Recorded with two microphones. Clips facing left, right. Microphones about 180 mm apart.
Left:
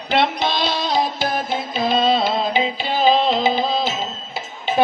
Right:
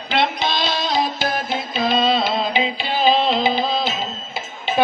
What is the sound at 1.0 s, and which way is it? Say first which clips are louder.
Music: left 1 dB; 50° left (ahead or behind).